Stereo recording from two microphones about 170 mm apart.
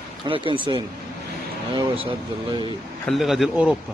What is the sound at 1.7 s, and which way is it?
Speech, 30° right (ahead or behind).